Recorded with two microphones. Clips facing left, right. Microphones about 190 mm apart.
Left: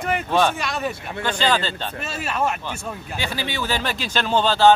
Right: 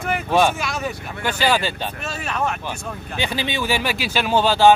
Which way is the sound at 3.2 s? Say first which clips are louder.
Right 4 dB; 20° right (ahead or behind).